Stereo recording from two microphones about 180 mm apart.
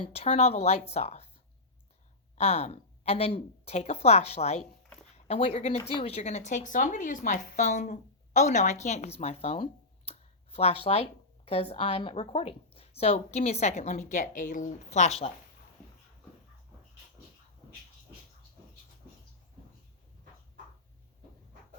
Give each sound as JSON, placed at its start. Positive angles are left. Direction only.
{"t": 0.0, "sound": "speech", "side_deg": 35}
{"t": 2.4, "sound": "speech", "side_deg": 35}
{"t": 10.1, "sound": "a sound", "side_deg": 35}
{"t": 11.4, "sound": "speech", "side_deg": 35}